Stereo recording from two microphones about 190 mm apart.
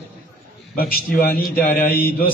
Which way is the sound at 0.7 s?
50° left (ahead or behind).